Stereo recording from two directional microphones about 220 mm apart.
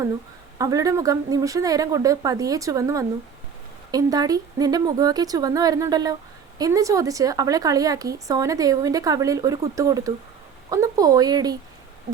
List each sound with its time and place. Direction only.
0.6 s a woman's voice: 15° right (ahead or behind)